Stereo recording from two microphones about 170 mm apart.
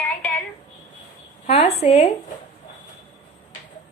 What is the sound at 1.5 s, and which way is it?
Speech, 40° left (ahead or behind).